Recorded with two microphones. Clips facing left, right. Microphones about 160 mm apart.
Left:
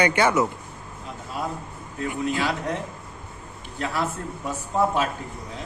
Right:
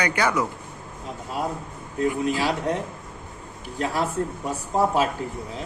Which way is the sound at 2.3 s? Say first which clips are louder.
Right 2 dB; 35° right (ahead or behind).